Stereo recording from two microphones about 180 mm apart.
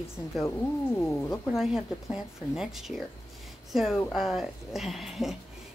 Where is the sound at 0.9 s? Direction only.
10° left (ahead or behind).